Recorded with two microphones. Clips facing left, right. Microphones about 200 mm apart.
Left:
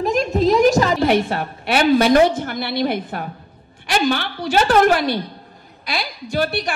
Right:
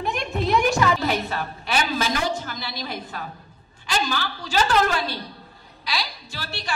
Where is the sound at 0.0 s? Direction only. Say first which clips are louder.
Left 9 dB; 40° left (ahead or behind).